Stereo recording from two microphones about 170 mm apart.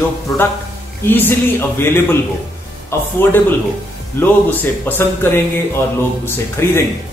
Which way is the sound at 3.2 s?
15° left (ahead or behind).